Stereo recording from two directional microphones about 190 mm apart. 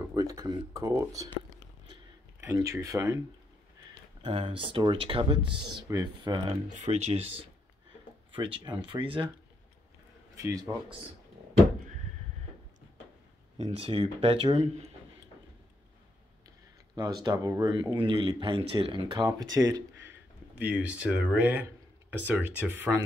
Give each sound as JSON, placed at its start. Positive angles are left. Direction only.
{"t": 0.1, "sound": "speech", "side_deg": -20}
{"t": 2.4, "sound": "speech", "side_deg": -15}
{"t": 4.2, "sound": "speech", "side_deg": -30}
{"t": 6.7, "sound": "speech", "side_deg": -40}
{"t": 10.3, "sound": "speech", "side_deg": -15}
{"t": 13.6, "sound": "speech", "side_deg": -35}
{"t": 16.9, "sound": "speech", "side_deg": -20}